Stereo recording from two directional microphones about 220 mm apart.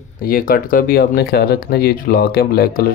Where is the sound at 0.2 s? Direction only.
40° left (ahead or behind).